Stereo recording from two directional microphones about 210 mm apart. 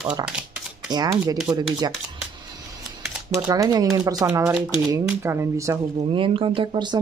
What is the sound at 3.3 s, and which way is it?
Speech, 15° right (ahead or behind).